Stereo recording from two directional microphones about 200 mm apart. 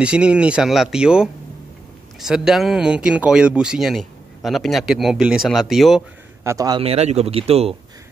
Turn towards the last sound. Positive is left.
turn(degrees=-30)  # may be behind; listen again after turning